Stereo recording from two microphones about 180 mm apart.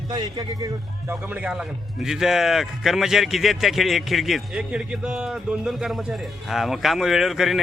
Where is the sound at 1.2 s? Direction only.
5° right (ahead or behind).